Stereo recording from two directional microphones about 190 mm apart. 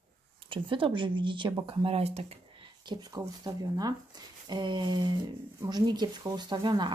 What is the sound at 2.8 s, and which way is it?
Speech, 20° right (ahead or behind).